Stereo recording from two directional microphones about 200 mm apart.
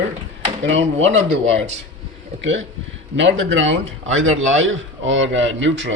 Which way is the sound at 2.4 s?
65° right (ahead or behind).